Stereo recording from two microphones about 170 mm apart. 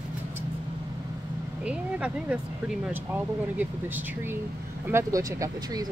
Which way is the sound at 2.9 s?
10° right (ahead or behind).